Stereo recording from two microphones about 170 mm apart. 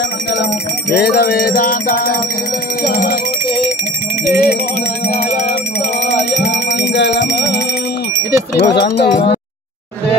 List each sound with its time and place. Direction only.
0.9 s bell: 70° left (ahead or behind)
4.3 s speech: 65° left (ahead or behind)
6.3 s music: 90° left
8.5 s speech: 70° left (ahead or behind)